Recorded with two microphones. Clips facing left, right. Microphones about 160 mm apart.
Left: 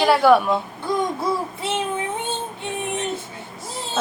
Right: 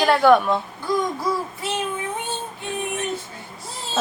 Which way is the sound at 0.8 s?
25° left (ahead or behind).